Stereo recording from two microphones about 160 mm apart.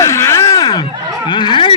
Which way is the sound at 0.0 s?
15° left (ahead or behind).